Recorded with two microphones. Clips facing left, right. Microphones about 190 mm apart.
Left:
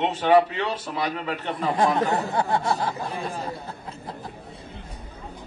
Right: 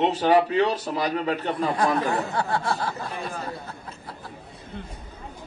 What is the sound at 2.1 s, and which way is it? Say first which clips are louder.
Speech: left 2 dB; 20° left (ahead or behind).